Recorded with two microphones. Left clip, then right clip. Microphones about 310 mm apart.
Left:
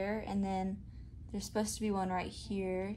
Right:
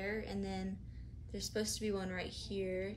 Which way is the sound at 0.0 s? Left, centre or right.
Centre.